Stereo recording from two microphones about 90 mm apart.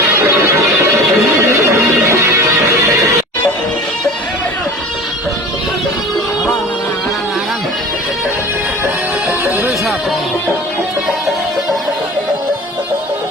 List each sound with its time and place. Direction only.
0.9 s music: 30° right (ahead or behind)